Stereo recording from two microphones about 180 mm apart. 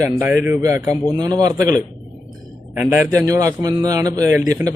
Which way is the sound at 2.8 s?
10° right (ahead or behind).